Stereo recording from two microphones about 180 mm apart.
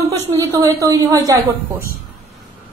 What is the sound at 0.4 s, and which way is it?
A woman's voice, 20° right (ahead or behind).